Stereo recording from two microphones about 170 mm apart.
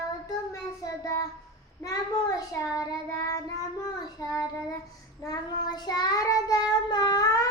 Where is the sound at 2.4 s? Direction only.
20° left (ahead or behind).